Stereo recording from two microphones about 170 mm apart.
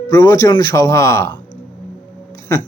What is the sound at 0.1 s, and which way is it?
Speech, 20° left (ahead or behind).